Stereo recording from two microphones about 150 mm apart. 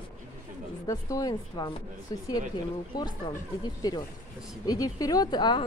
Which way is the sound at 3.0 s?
30° left (ahead or behind).